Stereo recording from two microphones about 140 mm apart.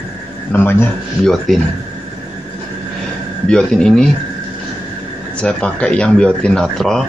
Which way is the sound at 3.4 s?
5° left (ahead or behind).